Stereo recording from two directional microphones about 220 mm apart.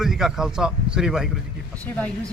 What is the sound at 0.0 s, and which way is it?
Speech, centre (ahead or behind).